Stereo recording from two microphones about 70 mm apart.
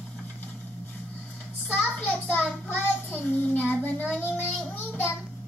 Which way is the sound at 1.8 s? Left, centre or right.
Left.